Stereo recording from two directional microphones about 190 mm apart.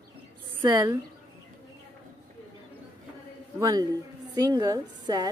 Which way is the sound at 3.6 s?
20° right (ahead or behind).